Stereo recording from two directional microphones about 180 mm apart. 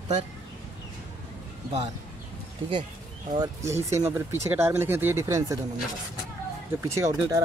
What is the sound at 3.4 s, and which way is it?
Speech, 15° right (ahead or behind).